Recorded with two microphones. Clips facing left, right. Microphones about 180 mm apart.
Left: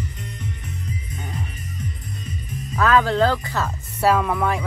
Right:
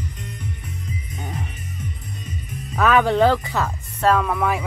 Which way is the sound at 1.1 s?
20° right (ahead or behind).